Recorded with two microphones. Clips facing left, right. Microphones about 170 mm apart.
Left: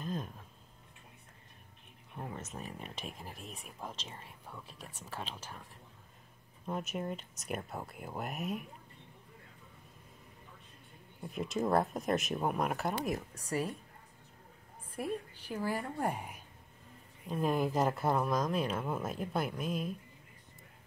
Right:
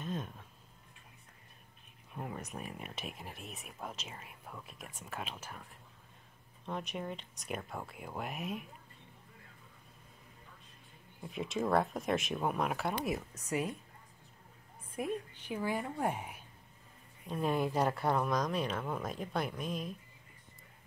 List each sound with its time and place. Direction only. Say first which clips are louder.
0.0 s a sound: left 1 dB; centre (ahead or behind)
2.1 s speech: right 1 dB; 15° right (ahead or behind)
4.6 s a woman's voice: even; 35° left (ahead or behind)
4.9 s speech: even; 10° right (ahead or behind)
11.2 s speech: left 1 dB; centre (ahead or behind)
15.0 s a woman's voice: even; 35° left (ahead or behind)
15.5 s speech: even; 5° left (ahead or behind)
16.0 s speech: even; 5° right (ahead or behind)